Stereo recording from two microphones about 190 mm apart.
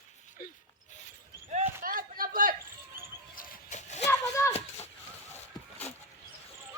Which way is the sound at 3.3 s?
45° left (ahead or behind).